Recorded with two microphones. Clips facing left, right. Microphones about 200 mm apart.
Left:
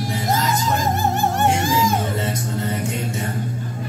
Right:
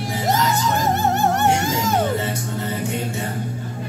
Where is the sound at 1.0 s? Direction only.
70° right (ahead or behind).